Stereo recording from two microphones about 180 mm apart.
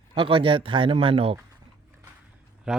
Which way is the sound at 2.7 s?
5° right (ahead or behind).